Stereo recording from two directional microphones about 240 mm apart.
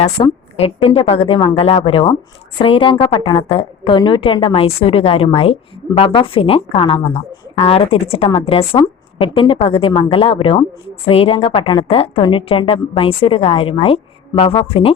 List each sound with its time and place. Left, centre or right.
0.0 s a woman's voice: left